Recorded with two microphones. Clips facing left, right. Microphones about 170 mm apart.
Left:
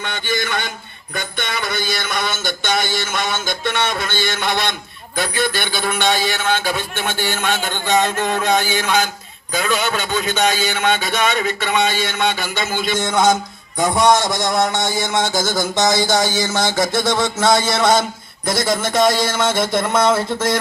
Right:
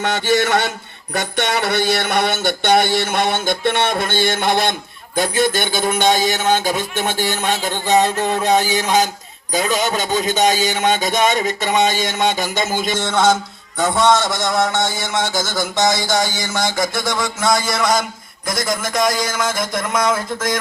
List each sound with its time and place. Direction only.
0.0 s a man's voice: 80° right
1.1 s mantra: 80° right; by 4.7 s 50° right (ahead or behind)
5.2 s music: 45° right (ahead or behind)
13.0 s music: 10° left (ahead or behind)
13.7 s a man's voice: 15° left (ahead or behind)